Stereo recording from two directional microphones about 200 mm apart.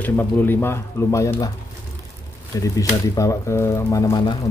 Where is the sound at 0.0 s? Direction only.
10° left (ahead or behind).